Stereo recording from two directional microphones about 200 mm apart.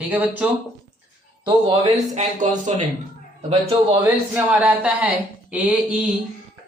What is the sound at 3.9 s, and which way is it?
Speech, 10° right (ahead or behind).